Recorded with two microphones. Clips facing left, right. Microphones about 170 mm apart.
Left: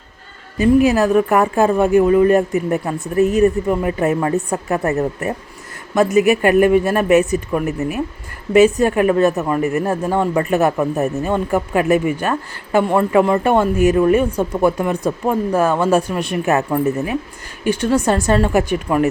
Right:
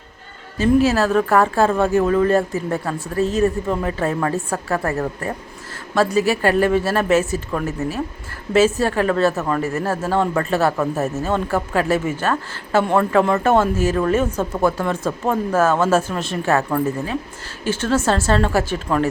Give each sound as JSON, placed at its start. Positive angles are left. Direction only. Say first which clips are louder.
{"t": 0.9, "sound": "speech", "louder": "left 3 dB", "side_deg": 15}